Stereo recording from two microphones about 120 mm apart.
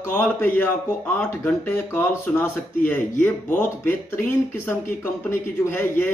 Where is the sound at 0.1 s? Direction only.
15° left (ahead or behind).